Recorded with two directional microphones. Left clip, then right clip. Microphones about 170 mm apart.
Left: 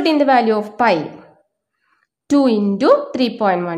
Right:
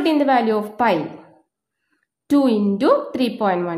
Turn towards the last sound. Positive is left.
turn(degrees=10)  # may be behind; listen again after turning